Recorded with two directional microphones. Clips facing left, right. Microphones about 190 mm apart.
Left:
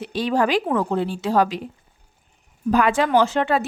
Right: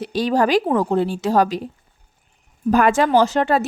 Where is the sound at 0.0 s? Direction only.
40° right (ahead or behind).